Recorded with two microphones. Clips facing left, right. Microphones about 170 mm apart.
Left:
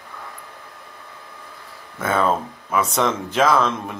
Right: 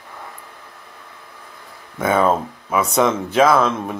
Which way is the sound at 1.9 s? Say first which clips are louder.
Right 3 dB; 10° right (ahead or behind).